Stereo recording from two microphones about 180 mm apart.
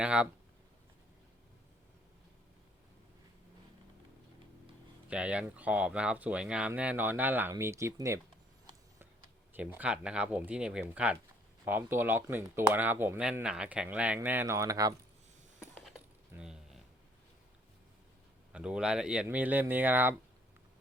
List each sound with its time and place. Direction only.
0.0 s speech: 5° right (ahead or behind)
5.0 s speech: 5° right (ahead or behind)
9.5 s speech: 10° right (ahead or behind)
15.7 s coin: centre (ahead or behind)
16.3 s a sound: 5° right (ahead or behind)
18.5 s speech: 5° right (ahead or behind)